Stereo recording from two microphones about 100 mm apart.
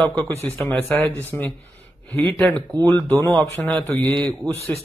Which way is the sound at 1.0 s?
20° left (ahead or behind).